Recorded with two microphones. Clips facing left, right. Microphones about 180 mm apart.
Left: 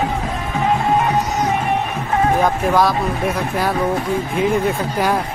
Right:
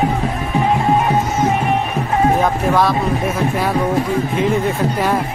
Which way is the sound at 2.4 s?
Centre (ahead or behind).